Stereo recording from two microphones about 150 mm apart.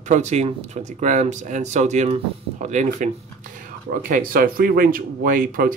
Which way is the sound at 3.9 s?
65° right (ahead or behind).